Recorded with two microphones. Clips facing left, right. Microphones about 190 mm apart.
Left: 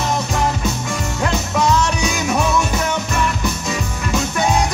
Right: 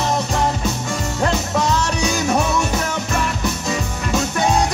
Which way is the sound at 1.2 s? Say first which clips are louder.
Left 1 dB; 40° right (ahead or behind).